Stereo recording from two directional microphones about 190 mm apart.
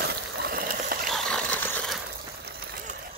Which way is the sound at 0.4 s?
55° right (ahead or behind).